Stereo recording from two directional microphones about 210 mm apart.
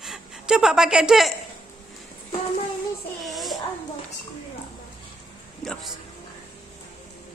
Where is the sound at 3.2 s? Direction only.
Centre (ahead or behind).